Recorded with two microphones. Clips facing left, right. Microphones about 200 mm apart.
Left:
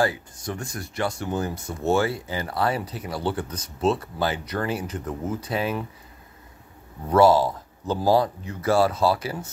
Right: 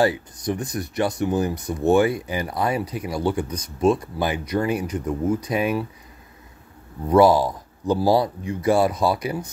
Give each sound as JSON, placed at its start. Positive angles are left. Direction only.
{"t": 0.0, "sound": "speech", "side_deg": -20}
{"t": 7.1, "sound": "speech", "side_deg": -15}